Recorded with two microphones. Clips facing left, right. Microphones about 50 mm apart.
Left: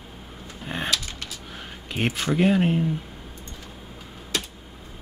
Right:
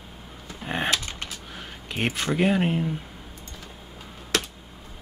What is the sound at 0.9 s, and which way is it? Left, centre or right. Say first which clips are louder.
Dog: right 1 dB; right.